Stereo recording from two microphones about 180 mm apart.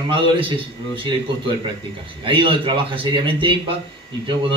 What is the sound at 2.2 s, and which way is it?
A man's voice, 25° right (ahead or behind).